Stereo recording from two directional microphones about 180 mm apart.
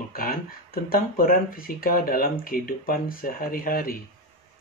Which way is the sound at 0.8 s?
50° left (ahead or behind).